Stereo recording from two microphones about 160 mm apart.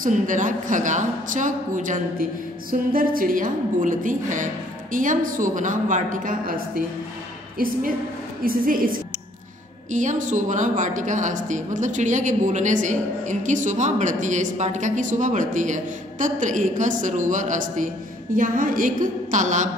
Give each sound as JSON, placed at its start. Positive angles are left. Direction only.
{"t": 0.0, "sound": "a woman's voice", "side_deg": -55}